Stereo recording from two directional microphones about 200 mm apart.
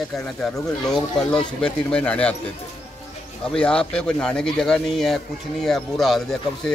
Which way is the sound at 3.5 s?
5° left (ahead or behind).